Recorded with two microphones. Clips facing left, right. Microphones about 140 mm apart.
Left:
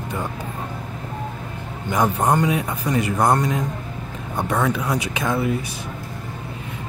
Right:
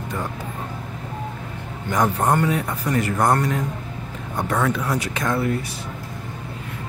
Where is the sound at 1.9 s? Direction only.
15° left (ahead or behind).